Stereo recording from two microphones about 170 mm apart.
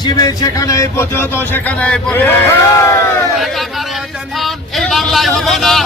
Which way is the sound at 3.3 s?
Centre (ahead or behind).